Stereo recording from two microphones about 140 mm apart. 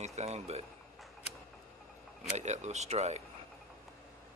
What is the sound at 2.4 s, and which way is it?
Speech, 55° right (ahead or behind).